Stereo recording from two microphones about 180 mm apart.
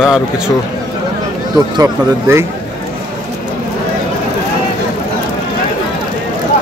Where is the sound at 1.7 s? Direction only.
15° right (ahead or behind).